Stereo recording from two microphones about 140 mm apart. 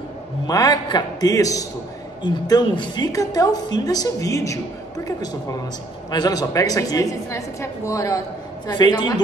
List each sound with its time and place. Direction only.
0.5 s a woman's voice: 25° left (ahead or behind)